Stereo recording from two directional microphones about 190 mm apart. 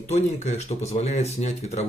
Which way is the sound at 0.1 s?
35° left (ahead or behind).